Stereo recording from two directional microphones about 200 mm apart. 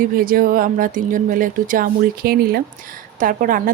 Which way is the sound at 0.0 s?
45° right (ahead or behind).